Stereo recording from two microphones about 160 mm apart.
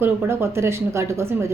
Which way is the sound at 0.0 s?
15° right (ahead or behind).